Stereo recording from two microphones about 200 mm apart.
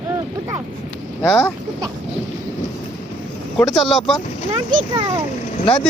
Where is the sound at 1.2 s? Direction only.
10° left (ahead or behind).